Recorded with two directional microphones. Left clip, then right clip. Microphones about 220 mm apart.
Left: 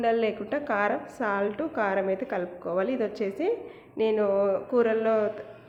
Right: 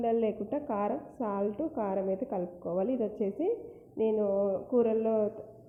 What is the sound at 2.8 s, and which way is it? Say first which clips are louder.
A woman's voice: left 3 dB; 35° left (ahead or behind).